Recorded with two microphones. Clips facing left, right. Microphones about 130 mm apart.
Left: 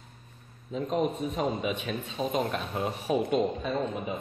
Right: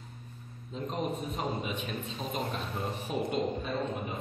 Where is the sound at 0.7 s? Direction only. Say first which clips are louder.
Left 6 dB; 65° left (ahead or behind).